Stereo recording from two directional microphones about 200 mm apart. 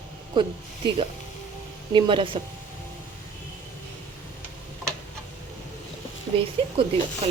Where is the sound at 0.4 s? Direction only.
25° right (ahead or behind).